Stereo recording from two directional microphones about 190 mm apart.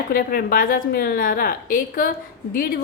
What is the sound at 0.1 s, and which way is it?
A woman's voice, 50° left (ahead or behind).